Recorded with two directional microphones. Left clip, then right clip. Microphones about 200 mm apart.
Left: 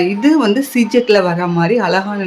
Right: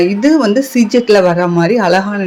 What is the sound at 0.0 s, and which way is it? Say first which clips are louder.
Speech: right 2 dB; 5° right (ahead or behind).